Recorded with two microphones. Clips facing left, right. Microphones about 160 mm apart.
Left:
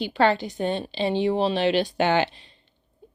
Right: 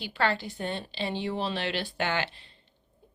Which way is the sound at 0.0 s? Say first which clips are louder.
Left 8 dB; 20° left (ahead or behind).